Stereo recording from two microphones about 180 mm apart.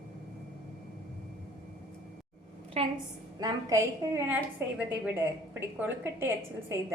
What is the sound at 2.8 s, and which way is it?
Speech, 35° right (ahead or behind).